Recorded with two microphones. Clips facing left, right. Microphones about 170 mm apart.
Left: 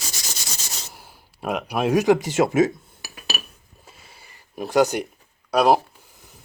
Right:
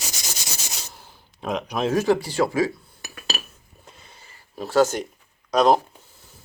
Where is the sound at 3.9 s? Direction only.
10° left (ahead or behind).